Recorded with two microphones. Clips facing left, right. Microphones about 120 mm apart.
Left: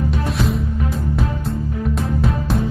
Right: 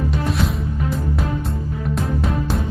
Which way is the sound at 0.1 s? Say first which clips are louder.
Left 1 dB; centre (ahead or behind).